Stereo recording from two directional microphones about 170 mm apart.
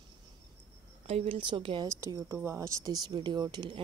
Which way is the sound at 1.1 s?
35° right (ahead or behind).